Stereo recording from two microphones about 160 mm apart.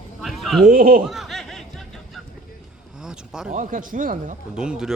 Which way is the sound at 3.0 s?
5° right (ahead or behind).